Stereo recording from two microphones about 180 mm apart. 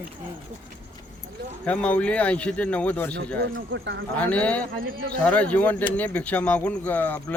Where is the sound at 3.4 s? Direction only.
80° right.